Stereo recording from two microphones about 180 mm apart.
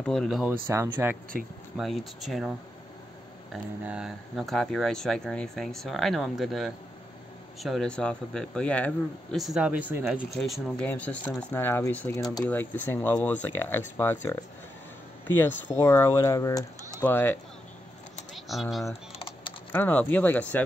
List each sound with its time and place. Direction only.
0.0 s speech: 5° left (ahead or behind)
1.8 s speech: centre (ahead or behind)
3.5 s speech: 5° right (ahead or behind); by 17.4 s 10° left (ahead or behind)
18.3 s speech: centre (ahead or behind)
19.1 s typing: 30° left (ahead or behind)
19.7 s speech: 10° left (ahead or behind)